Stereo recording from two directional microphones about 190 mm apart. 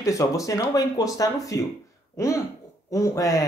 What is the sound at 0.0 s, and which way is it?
Speech, 15° left (ahead or behind).